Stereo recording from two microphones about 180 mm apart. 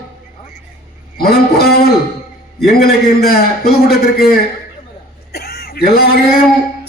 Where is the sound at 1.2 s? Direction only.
60° left (ahead or behind).